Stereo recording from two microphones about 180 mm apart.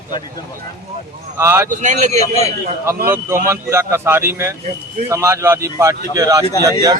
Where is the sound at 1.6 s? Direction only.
45° right (ahead or behind).